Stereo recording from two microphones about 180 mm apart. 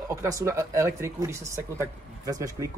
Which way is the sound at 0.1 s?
15° right (ahead or behind).